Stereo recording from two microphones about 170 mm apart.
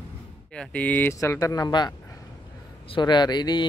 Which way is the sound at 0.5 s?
5° left (ahead or behind).